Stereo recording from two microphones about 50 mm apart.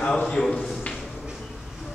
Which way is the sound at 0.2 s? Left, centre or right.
Centre.